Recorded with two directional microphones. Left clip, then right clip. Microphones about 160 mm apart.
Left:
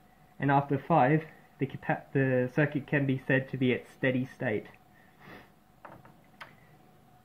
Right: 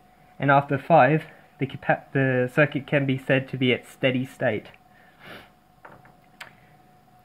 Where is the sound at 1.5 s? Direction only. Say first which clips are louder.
Right 8 dB; 90° right; by 4.1 s 75° right (ahead or behind).